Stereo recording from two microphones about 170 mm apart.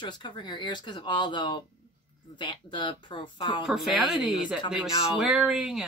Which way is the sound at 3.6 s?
Centre (ahead or behind).